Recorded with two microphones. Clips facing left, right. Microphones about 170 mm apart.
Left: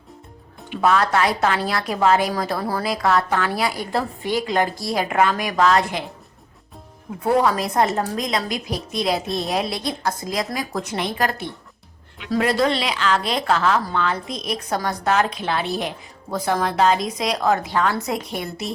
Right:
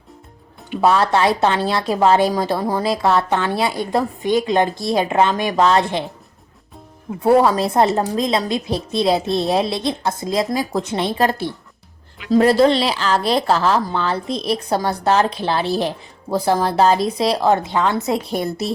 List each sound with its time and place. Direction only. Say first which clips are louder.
0.8 s speech: right 3 dB; 30° right (ahead or behind)
7.2 s speech: right 5 dB; 30° right (ahead or behind)